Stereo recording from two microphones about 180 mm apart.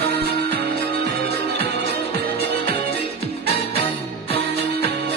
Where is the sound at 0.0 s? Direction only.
60° right (ahead or behind).